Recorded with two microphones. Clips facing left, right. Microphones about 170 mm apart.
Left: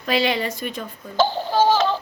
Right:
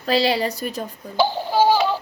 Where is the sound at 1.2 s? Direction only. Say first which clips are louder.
Even; 10° right (ahead or behind).